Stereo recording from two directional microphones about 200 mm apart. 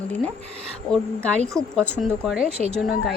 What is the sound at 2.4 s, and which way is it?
Speech, 30° right (ahead or behind).